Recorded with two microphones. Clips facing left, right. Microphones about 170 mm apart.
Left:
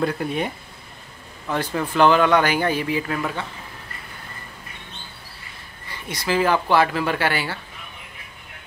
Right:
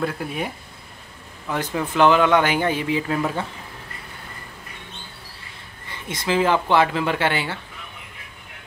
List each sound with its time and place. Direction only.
0.0 s speech: 5° right (ahead or behind)
1.5 s speech: 10° right (ahead or behind)
5.9 s speech: 20° right (ahead or behind)